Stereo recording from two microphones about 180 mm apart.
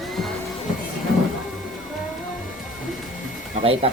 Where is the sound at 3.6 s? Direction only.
35° right (ahead or behind).